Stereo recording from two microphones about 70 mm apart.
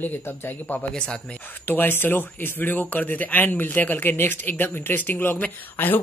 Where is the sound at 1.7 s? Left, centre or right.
Left.